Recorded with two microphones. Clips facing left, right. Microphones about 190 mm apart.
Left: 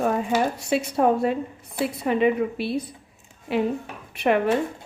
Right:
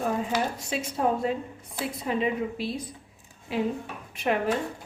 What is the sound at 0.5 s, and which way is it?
A woman's voice, 65° left (ahead or behind).